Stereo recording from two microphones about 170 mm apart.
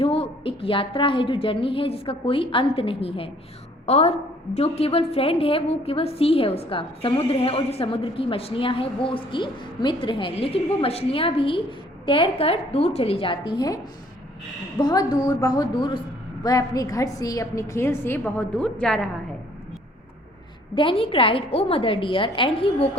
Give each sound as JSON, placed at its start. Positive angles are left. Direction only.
{"t": 0.0, "sound": "a woman's voice", "side_deg": 30}
{"t": 14.8, "sound": "a woman's voice", "side_deg": 25}
{"t": 20.7, "sound": "a woman's voice", "side_deg": 30}